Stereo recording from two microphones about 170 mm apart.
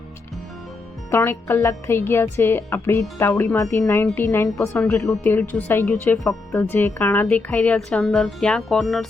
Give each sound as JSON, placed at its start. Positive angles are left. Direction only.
{"t": 1.1, "sound": "speech", "side_deg": 15}